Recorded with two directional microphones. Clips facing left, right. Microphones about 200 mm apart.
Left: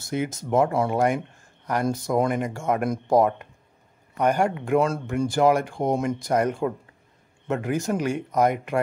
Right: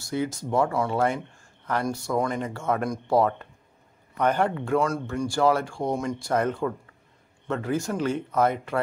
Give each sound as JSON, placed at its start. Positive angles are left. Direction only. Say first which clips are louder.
{"t": 0.0, "sound": "speech", "louder": "even", "side_deg": 20}